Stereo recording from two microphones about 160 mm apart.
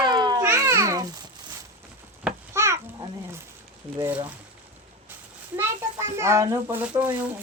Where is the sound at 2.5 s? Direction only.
15° right (ahead or behind).